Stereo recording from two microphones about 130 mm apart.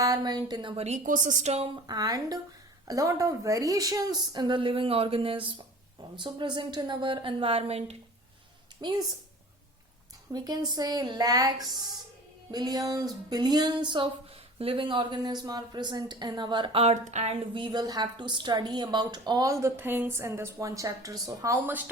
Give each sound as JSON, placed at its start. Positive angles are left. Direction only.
{"t": 0.0, "sound": "a woman's voice", "side_deg": -30}
{"t": 0.9, "sound": "a woman's voice", "side_deg": -80}
{"t": 1.9, "sound": "a woman's voice", "side_deg": -30}
{"t": 8.8, "sound": "a woman's voice", "side_deg": -30}
{"t": 10.3, "sound": "a woman's voice", "side_deg": -30}
{"t": 16.8, "sound": "a woman's voice", "side_deg": -60}